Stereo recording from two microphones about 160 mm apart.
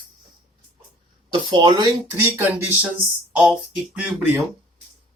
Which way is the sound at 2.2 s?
15° right (ahead or behind).